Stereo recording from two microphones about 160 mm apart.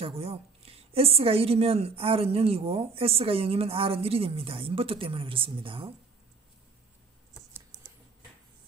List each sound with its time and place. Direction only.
0.0 s a woman's voice: 40° right (ahead or behind)
7.5 s computer keyboard: 10° right (ahead or behind)